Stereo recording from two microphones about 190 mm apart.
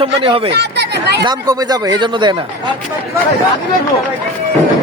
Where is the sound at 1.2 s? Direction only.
20° right (ahead or behind).